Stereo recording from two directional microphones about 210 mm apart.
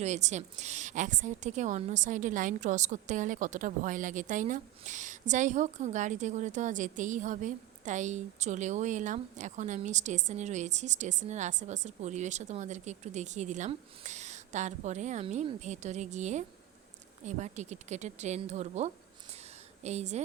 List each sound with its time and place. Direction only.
0.0 s a woman's voice: 35° right (ahead or behind)